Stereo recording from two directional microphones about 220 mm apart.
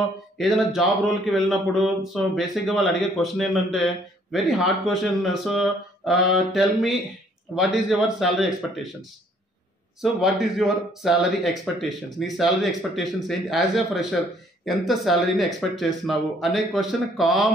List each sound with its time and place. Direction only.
0.4 s speech: centre (ahead or behind)
10.2 s speech: centre (ahead or behind)